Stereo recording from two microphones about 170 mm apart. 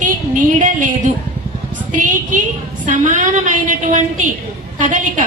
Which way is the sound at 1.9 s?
50° right (ahead or behind).